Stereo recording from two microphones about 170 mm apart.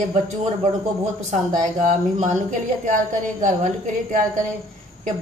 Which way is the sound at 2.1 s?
45° right (ahead or behind).